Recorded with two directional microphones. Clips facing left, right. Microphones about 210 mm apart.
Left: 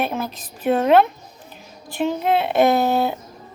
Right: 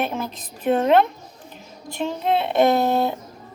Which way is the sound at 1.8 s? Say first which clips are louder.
Left 3 dB; 5° left (ahead or behind).